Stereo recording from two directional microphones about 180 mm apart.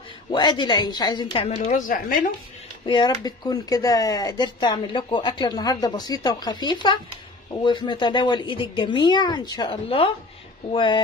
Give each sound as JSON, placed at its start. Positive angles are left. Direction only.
{"t": 0.3, "sound": "speech", "side_deg": 25}
{"t": 1.6, "sound": "speech", "side_deg": 45}
{"t": 2.9, "sound": "speech", "side_deg": 25}